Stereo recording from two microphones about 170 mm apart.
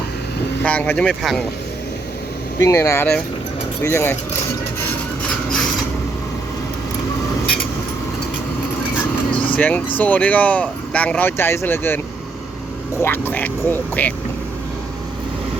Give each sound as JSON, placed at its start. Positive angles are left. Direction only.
{"t": 0.6, "sound": "speech", "side_deg": 10}
{"t": 2.6, "sound": "speech", "side_deg": 15}
{"t": 9.3, "sound": "speech", "side_deg": 10}
{"t": 13.0, "sound": "speech", "side_deg": 10}